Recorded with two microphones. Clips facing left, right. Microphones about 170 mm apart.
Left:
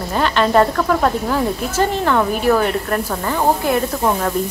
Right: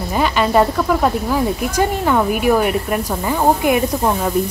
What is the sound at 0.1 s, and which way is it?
Speech, 5° right (ahead or behind).